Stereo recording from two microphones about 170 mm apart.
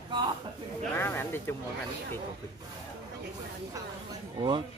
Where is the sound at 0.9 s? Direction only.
15° left (ahead or behind).